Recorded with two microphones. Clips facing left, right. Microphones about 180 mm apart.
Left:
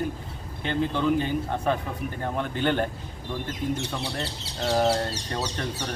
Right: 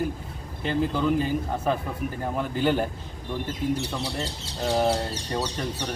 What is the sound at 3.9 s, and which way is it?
Speech, 10° right (ahead or behind).